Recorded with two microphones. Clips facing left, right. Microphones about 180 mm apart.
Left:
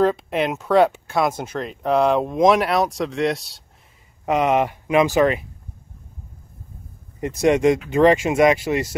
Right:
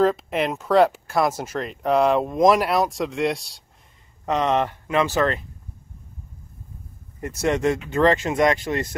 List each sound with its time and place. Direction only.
0.0 s speech: centre (ahead or behind)
7.2 s speech: 15° left (ahead or behind)